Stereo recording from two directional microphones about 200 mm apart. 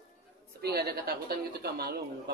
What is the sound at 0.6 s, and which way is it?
A woman's voice, 50° right (ahead or behind).